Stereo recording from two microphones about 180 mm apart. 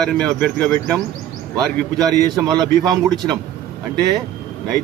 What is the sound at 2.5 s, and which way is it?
Speech, 20° right (ahead or behind).